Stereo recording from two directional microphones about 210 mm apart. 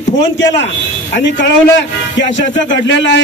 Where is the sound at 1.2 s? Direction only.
60° left (ahead or behind).